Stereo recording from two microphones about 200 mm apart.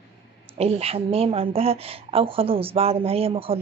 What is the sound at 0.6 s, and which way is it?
Speech, 30° right (ahead or behind).